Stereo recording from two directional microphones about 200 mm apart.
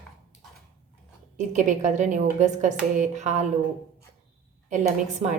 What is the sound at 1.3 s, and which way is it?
A woman's voice, 40° right (ahead or behind).